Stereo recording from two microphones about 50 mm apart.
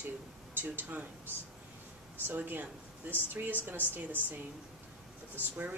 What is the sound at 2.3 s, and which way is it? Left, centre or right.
A woman's voice, right.